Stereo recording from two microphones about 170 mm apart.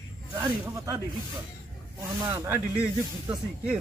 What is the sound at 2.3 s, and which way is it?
Speech, 20° right (ahead or behind).